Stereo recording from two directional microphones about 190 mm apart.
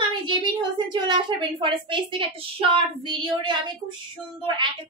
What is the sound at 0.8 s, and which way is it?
Child singing, 25° right (ahead or behind).